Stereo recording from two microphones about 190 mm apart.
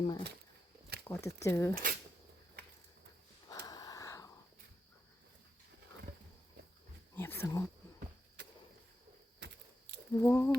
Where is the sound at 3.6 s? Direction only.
20° left (ahead or behind).